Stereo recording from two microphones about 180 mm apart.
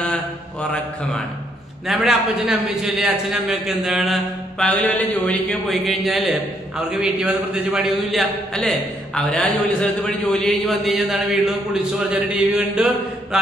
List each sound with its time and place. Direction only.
1.9 s a man's voice: centre (ahead or behind)